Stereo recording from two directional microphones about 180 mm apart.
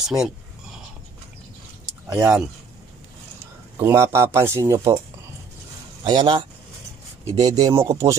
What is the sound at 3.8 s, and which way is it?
Speech, 15° right (ahead or behind).